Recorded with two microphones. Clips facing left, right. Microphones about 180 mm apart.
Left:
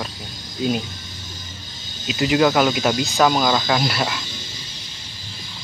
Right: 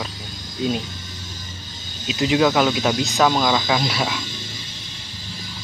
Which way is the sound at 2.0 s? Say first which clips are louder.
Left 1 dB; centre (ahead or behind).